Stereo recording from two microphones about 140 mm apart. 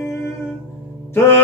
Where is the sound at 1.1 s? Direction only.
15° left (ahead or behind).